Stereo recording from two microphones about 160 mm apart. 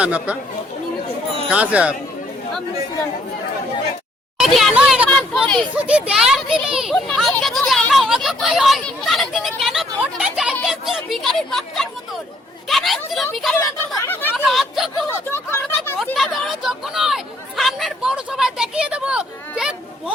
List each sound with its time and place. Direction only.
0.0 s speech: 10° right (ahead or behind)
1.5 s speech: 10° right (ahead or behind)
4.4 s a child's voice: centre (ahead or behind)
5.7 s a child's voice: 5° right (ahead or behind)
14.0 s speech: 10° left (ahead or behind)
14.3 s a child's voice: centre (ahead or behind)
15.3 s a sound: 15° left (ahead or behind)
16.1 s a sound: centre (ahead or behind)
17.6 s speech: centre (ahead or behind)